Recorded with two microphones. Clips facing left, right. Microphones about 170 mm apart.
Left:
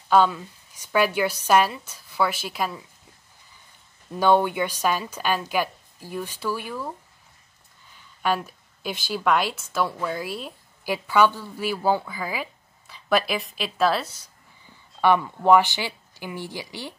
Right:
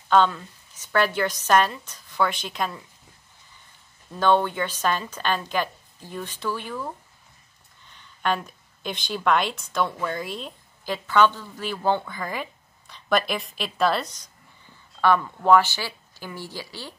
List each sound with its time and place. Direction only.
0.1 s a woman's voice: 10° left (ahead or behind)
4.1 s a woman's voice: 10° left (ahead or behind)